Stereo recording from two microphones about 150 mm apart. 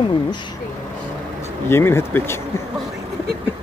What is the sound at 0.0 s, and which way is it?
Speech, 30° left (ahead or behind).